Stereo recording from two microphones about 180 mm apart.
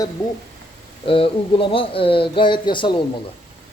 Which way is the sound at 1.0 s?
30° left (ahead or behind).